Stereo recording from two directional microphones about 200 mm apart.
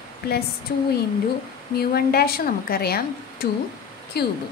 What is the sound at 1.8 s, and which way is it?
A woman's voice, 50° left (ahead or behind).